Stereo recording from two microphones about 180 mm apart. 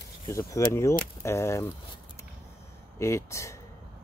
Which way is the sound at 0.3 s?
15° left (ahead or behind).